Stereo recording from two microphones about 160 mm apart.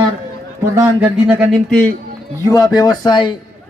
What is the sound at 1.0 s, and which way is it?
Speech, 5° right (ahead or behind).